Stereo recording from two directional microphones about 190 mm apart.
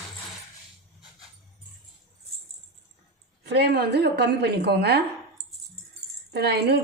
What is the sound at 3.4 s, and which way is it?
A woman's voice, 60° right (ahead or behind).